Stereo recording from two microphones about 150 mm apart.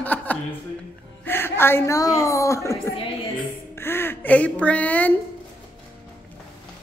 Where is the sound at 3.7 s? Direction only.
15° left (ahead or behind).